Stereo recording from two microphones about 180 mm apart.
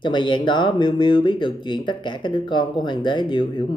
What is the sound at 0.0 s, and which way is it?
Speech, 25° left (ahead or behind).